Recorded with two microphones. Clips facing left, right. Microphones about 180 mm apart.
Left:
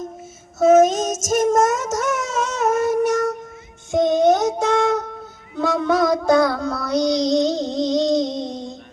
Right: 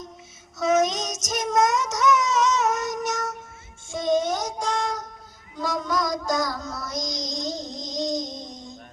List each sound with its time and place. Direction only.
0.6 s child singing: 50° left (ahead or behind); by 8.7 s 65° left (ahead or behind)